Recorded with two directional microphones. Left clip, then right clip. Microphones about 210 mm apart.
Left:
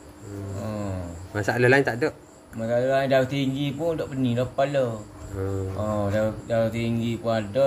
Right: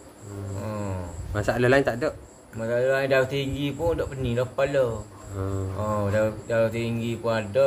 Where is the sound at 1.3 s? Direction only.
Centre (ahead or behind).